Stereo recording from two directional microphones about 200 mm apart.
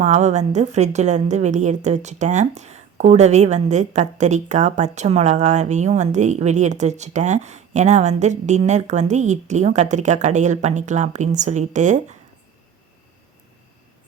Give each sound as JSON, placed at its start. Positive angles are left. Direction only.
{"t": 0.0, "sound": "a woman's voice", "side_deg": -35}